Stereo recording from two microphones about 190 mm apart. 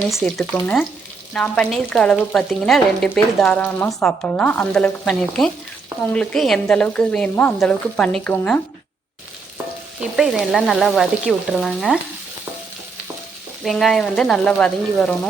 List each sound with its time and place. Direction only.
0.1 s frying: centre (ahead or behind)
10.0 s frying: centre (ahead or behind)
13.7 s frying: centre (ahead or behind)